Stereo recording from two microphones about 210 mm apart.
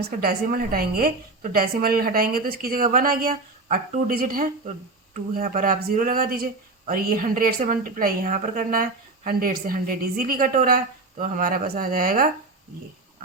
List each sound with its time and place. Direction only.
0.0 s speech: 45° right (ahead or behind)